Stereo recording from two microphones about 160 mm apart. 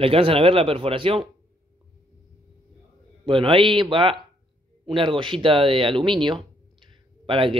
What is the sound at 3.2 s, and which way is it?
Speech, 35° right (ahead or behind).